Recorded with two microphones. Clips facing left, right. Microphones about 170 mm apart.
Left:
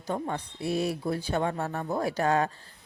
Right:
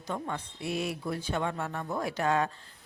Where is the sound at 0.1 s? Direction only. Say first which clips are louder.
Left 4 dB; 35° left (ahead or behind).